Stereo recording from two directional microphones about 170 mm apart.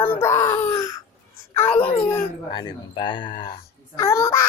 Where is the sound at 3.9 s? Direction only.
15° left (ahead or behind).